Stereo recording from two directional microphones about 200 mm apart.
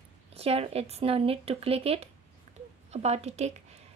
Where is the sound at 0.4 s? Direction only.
30° right (ahead or behind).